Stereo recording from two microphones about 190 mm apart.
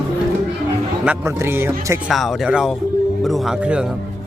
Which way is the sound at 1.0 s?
10° right (ahead or behind).